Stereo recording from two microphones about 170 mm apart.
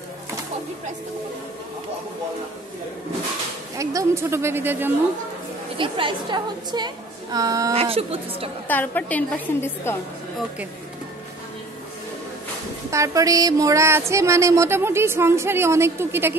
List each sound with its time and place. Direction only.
3.7 s speech: 20° right (ahead or behind)
5.8 s a woman's voice: 30° right (ahead or behind)
7.7 s speech: 35° right (ahead or behind)
8.6 s a woman's voice: 10° left (ahead or behind)
12.9 s speech: 20° right (ahead or behind)